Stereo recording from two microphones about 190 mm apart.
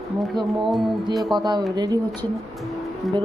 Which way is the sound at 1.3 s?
20° right (ahead or behind).